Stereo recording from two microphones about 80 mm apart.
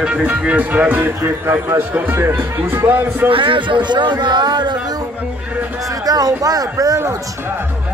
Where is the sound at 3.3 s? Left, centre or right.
Right.